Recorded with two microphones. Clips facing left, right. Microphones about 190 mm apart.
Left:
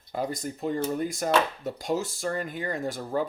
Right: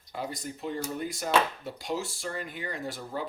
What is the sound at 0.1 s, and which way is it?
Speech, 45° left (ahead or behind).